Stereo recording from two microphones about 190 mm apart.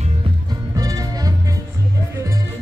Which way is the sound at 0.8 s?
20° right (ahead or behind).